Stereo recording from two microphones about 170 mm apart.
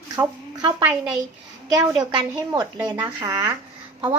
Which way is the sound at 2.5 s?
25° right (ahead or behind).